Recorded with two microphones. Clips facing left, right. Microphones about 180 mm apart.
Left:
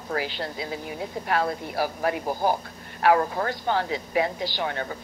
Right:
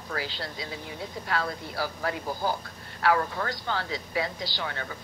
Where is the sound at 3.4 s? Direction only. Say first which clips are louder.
Left 6 dB; 20° left (ahead or behind).